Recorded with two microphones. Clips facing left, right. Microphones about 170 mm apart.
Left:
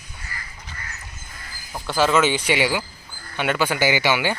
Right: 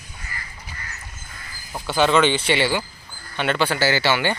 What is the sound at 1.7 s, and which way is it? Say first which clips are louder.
Speech: right 1 dB; centre (ahead or behind).